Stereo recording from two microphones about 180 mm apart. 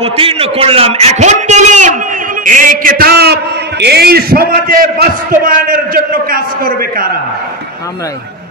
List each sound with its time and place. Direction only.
0.0 s a man's voice: 30° right (ahead or behind); by 7.1 s 55° right (ahead or behind)